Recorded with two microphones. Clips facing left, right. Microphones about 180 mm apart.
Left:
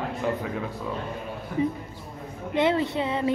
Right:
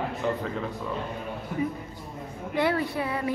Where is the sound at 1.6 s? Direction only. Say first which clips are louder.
Left 5 dB; 25° left (ahead or behind).